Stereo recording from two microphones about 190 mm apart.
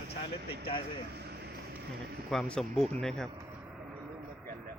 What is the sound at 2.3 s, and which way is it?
Speech, 5° left (ahead or behind).